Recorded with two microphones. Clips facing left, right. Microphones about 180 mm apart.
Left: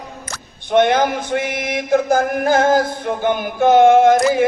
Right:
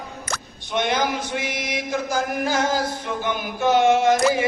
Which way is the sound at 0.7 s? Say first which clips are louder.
Left 8 dB; 55° left (ahead or behind).